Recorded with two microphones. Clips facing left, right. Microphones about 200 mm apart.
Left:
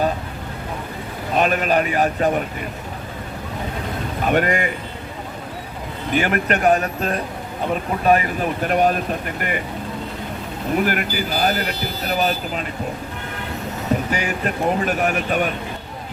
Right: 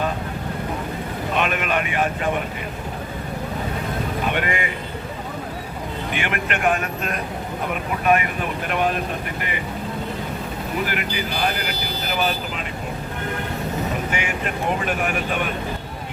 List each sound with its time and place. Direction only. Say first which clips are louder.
1.3 s speech: left 5 dB; 35° left (ahead or behind)
4.3 s speech: left 8 dB; 40° left (ahead or behind)
6.1 s speech: left 8 dB; 40° left (ahead or behind)
10.8 s speech: left 4 dB; 45° left (ahead or behind)
14.1 s speech: left 3 dB; 40° left (ahead or behind)